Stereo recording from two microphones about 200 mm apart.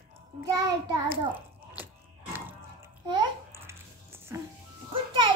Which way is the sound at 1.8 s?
10° right (ahead or behind).